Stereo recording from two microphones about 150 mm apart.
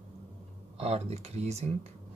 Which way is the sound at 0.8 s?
45° right (ahead or behind).